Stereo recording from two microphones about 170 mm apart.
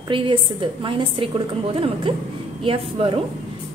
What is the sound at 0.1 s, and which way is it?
A woman's voice, 30° right (ahead or behind).